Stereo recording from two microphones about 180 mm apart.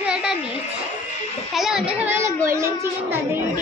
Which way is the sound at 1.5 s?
Centre (ahead or behind).